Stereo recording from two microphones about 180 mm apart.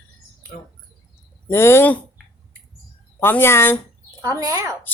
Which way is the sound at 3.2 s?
10° left (ahead or behind).